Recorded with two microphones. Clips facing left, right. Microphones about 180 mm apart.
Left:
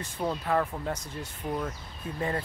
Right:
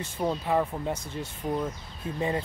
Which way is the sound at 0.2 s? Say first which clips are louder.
Right 2 dB; 10° right (ahead or behind).